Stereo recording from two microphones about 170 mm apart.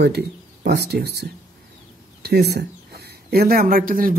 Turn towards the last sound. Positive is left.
turn(degrees=-55)  # may be behind; listen again after turning